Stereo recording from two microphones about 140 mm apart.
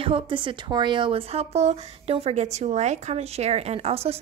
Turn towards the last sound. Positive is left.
turn(degrees=-45)  # may be behind; listen again after turning